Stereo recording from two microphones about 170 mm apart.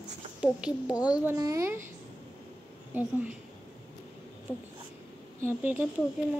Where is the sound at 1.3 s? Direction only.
20° right (ahead or behind).